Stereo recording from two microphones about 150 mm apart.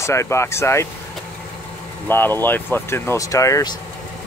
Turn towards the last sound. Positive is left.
turn(degrees=25)  # may be behind; listen again after turning